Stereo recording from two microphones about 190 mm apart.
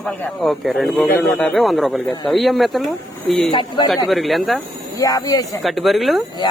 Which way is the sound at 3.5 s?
25° left (ahead or behind).